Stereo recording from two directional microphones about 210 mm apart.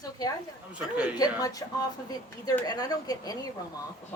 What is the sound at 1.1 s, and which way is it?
Speech, 20° left (ahead or behind).